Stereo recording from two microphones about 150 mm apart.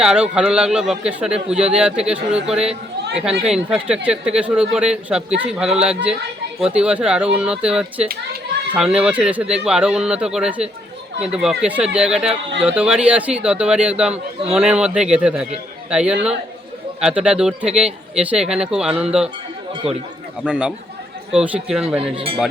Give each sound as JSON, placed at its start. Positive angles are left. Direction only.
{"t": 0.0, "sound": "speech", "side_deg": -5}
{"t": 20.4, "sound": "speech", "side_deg": -5}
{"t": 22.1, "sound": "speech", "side_deg": -35}